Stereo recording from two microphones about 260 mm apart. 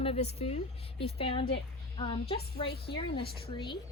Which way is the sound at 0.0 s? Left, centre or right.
Left.